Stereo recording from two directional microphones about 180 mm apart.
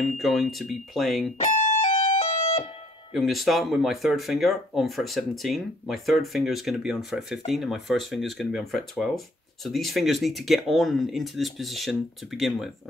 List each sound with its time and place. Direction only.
0.0 s speech: centre (ahead or behind)
1.4 s music: 40° left (ahead or behind)
3.1 s speech: centre (ahead or behind)